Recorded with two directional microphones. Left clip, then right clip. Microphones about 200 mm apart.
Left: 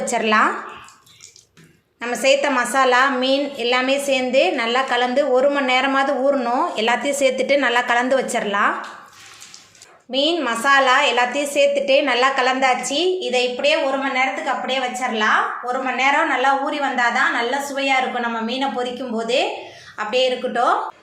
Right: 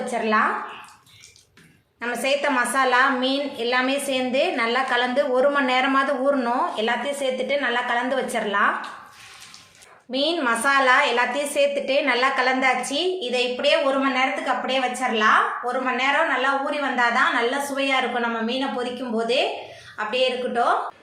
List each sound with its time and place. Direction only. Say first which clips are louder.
0.1 s speech: left 4 dB; 30° left (ahead or behind)
2.0 s a woman's voice: left 6 dB; 20° left (ahead or behind)
10.1 s a woman's voice: left 2 dB; 15° left (ahead or behind)